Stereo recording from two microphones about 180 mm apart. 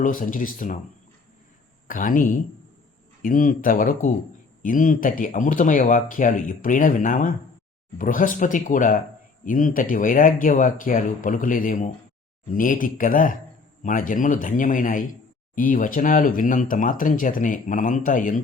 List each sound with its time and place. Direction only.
0.0 s speech: 45° left (ahead or behind)
1.9 s speech: 50° left (ahead or behind)